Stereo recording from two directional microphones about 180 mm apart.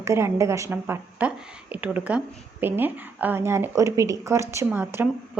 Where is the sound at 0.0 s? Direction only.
15° right (ahead or behind).